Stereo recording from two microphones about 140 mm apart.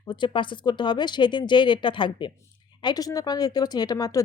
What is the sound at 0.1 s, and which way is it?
Speech, 35° left (ahead or behind).